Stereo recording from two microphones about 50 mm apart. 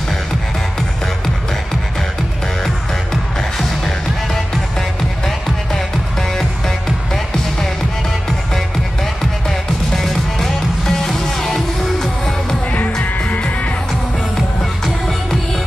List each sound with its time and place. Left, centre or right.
3.3 s music: centre
9.2 s music: centre
13.0 s music: left